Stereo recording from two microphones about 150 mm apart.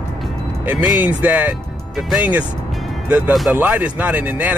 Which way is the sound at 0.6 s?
10° right (ahead or behind).